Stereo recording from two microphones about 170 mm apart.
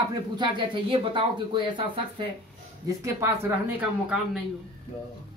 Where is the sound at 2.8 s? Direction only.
15° right (ahead or behind).